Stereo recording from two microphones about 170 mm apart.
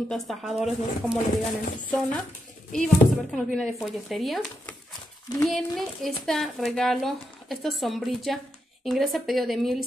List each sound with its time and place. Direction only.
0.1 s speech: centre (ahead or behind)